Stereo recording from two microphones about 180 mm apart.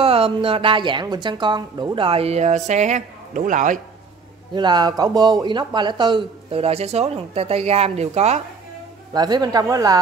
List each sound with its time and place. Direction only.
0.0 s speech: 30° right (ahead or behind)
4.6 s speech: 25° right (ahead or behind)
9.1 s speech: 20° right (ahead or behind)